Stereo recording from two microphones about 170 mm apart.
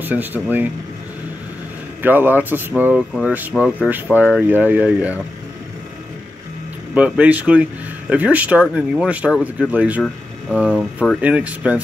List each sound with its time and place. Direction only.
0.0 s speech: 10° right (ahead or behind)
2.0 s speech: 10° right (ahead or behind)
6.9 s speech: 10° right (ahead or behind)